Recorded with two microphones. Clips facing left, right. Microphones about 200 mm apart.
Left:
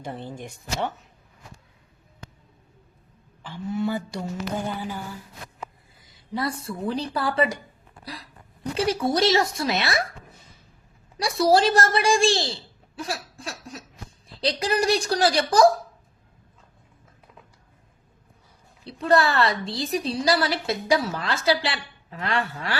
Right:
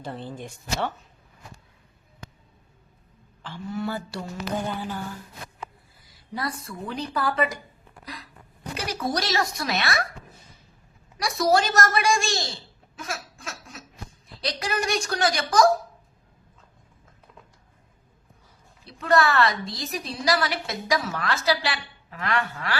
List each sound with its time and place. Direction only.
0.0 s speech: 15° left (ahead or behind)
3.7 s speech: 20° left (ahead or behind)
4.5 s speech: 5° left (ahead or behind); by 7.5 s 30° left (ahead or behind)
8.0 s hiccup: 35° left (ahead or behind)
8.7 s speech: 25° left (ahead or behind)
11.2 s a woman's voice: 30° left (ahead or behind)
18.9 s a woman's voice: 30° left (ahead or behind)